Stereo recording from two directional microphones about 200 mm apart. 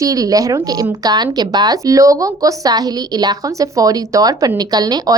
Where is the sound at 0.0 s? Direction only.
15° right (ahead or behind).